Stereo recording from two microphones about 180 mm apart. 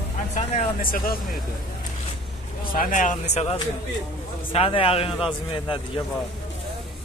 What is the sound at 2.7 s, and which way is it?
Speech, 50° left (ahead or behind).